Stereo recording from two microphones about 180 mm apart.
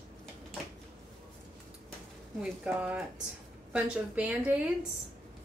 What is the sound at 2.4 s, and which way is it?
A woman's voice, 5° right (ahead or behind).